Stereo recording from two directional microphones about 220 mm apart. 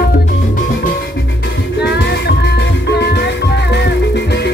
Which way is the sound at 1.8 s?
50° left (ahead or behind).